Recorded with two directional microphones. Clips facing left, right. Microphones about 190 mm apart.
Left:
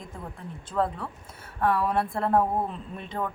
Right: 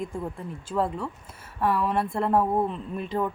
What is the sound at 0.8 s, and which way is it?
Speech, centre (ahead or behind).